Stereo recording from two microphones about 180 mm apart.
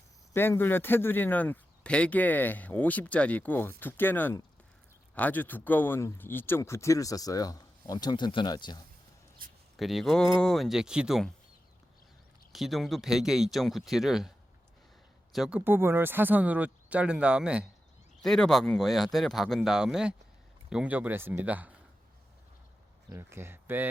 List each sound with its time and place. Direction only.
0.3 s speech: 10° left (ahead or behind)
9.7 s speech: centre (ahead or behind)
12.5 s speech: centre (ahead or behind)
23.1 s speech: 15° right (ahead or behind)